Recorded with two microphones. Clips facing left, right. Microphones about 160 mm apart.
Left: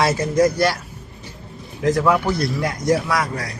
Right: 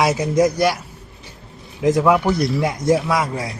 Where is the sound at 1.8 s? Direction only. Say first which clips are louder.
Right 2 dB; 20° right (ahead or behind).